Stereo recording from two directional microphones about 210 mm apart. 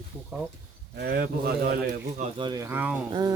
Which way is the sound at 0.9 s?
45° right (ahead or behind).